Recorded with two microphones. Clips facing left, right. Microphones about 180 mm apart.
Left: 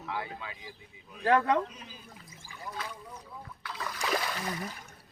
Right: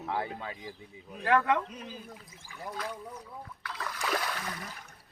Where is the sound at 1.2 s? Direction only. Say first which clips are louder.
Left 1 dB; 35° left (ahead or behind).